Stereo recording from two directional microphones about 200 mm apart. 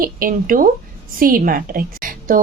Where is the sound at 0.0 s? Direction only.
45° right (ahead or behind).